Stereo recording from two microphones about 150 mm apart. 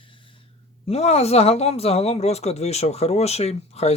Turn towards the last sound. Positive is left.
turn(degrees=45)  # may be behind; listen again after turning